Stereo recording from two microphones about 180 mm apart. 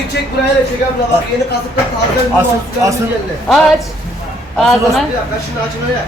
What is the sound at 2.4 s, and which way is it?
Speech, 20° right (ahead or behind).